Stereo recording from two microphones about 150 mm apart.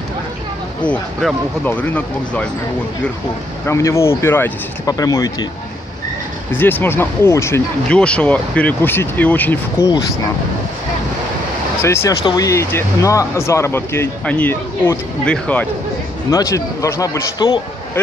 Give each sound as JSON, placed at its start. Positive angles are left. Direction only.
{"t": 0.8, "sound": "speech", "side_deg": 10}
{"t": 3.6, "sound": "speech", "side_deg": 20}
{"t": 6.5, "sound": "speech", "side_deg": 15}
{"t": 7.9, "sound": "speech", "side_deg": 5}
{"t": 11.8, "sound": "speech", "side_deg": 20}
{"t": 16.3, "sound": "speech", "side_deg": 20}